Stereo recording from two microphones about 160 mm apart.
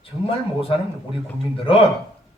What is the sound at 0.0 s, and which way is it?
A man's voice, 35° left (ahead or behind).